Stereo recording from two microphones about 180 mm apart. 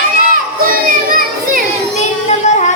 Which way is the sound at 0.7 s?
50° right (ahead or behind).